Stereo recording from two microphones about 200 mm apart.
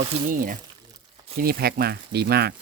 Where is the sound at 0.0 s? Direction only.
40° right (ahead or behind).